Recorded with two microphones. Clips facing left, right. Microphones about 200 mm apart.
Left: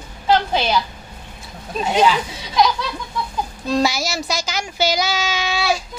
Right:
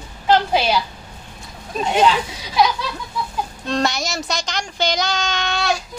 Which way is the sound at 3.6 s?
5° left (ahead or behind).